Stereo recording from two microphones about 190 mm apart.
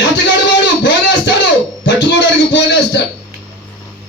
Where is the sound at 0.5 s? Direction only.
70° left (ahead or behind).